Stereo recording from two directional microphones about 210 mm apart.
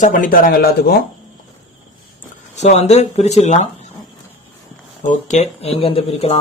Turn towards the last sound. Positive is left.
turn(degrees=25)  # may be behind; listen again after turning